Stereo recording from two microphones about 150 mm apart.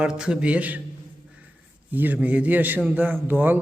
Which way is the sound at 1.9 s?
10° right (ahead or behind).